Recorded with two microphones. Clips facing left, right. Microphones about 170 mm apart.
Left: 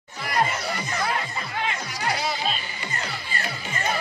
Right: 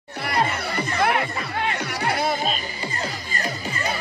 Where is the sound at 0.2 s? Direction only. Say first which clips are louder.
Right 1 dB; 65° right (ahead or behind).